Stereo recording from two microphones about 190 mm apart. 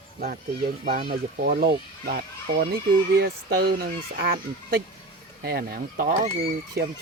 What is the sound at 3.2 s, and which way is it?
Speech, 55° right (ahead or behind).